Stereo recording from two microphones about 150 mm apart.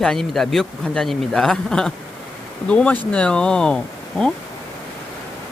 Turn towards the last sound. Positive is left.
turn(degrees=5)  # may be behind; listen again after turning